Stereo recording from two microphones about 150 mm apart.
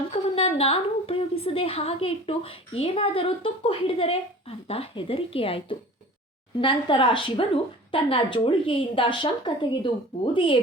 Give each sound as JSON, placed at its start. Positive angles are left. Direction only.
{"t": 0.1, "sound": "a woman's voice", "side_deg": 40}